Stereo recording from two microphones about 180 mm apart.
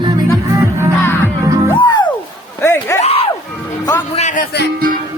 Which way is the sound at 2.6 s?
15° left (ahead or behind).